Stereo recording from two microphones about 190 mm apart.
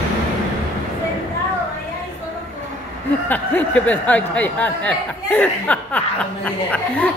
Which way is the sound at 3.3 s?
10° left (ahead or behind).